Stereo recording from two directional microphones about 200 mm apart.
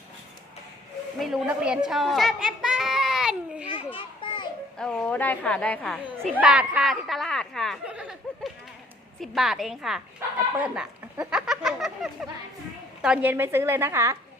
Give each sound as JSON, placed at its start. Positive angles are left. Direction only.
{"t": 1.2, "sound": "speech", "side_deg": -5}
{"t": 1.9, "sound": "a sound", "side_deg": 0}
{"t": 3.7, "sound": "children playing", "side_deg": 25}
{"t": 4.8, "sound": "a woman's voice", "side_deg": 5}
{"t": 9.2, "sound": "a woman's voice", "side_deg": 0}